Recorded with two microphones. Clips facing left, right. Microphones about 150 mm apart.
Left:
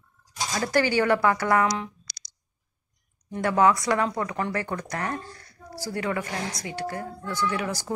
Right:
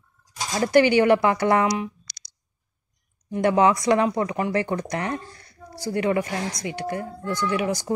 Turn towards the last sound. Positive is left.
turn(degrees=-20)  # may be behind; listen again after turning